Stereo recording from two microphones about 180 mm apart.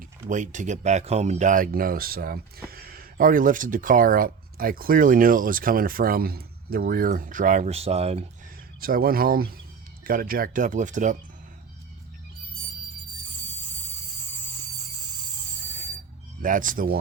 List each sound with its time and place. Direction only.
0.3 s speech: 45° right (ahead or behind)
8.8 s speech: 55° right (ahead or behind)
16.4 s speech: 50° right (ahead or behind)